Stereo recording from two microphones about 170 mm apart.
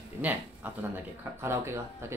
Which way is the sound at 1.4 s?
15° right (ahead or behind).